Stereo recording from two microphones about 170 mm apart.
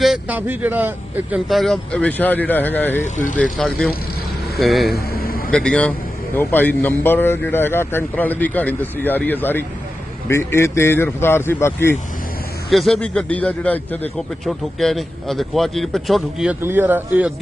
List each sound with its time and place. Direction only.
0.0 s speech: 5° right (ahead or behind)
1.5 s a man's voice: centre (ahead or behind)
5.1 s vehicle: 60° left (ahead or behind)
5.5 s a man's voice: 5° left (ahead or behind)
12.7 s a man's voice: centre (ahead or behind)